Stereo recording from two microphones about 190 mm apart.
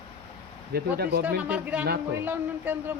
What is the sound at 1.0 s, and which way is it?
Speech, 55° right (ahead or behind).